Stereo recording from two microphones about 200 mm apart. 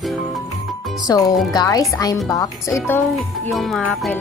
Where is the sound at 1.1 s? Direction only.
20° left (ahead or behind).